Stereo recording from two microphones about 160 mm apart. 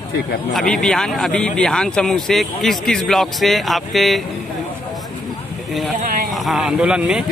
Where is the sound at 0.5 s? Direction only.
5° left (ahead or behind).